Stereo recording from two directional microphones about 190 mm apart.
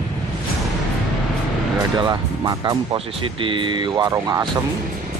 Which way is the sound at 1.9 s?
20° right (ahead or behind).